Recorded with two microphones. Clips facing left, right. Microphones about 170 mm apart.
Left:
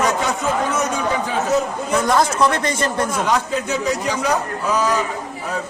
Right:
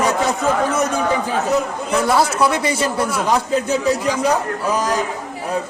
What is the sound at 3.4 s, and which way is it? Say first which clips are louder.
Speech: right 3 dB; 35° right (ahead or behind).